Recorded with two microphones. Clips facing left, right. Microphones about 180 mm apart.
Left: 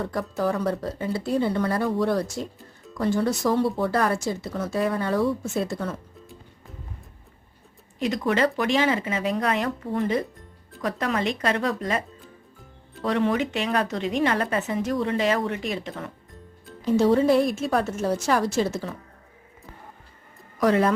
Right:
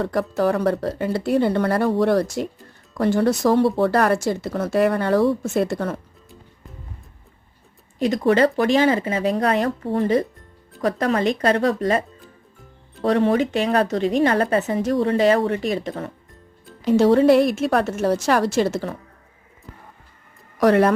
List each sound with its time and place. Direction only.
0.0 s speech: 75° right (ahead or behind)
7.9 s a woman's voice: 40° right (ahead or behind)
16.8 s speech: 75° right (ahead or behind)
20.6 s speech: 70° right (ahead or behind)